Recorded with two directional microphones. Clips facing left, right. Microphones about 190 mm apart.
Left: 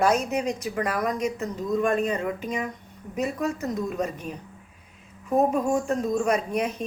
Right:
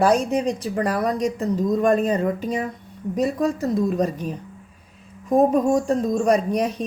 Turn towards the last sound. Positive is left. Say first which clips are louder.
# right 5 dB
turn(degrees=-35)  # may be behind; listen again after turning